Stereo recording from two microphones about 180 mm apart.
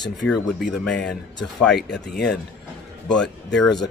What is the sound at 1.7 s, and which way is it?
Speech, 70° left (ahead or behind).